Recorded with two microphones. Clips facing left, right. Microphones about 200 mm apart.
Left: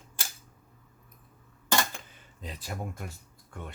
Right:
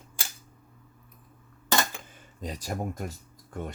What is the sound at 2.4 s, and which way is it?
Speech, 40° right (ahead or behind).